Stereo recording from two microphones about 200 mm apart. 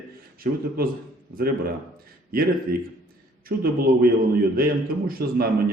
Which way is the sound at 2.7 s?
45° right (ahead or behind).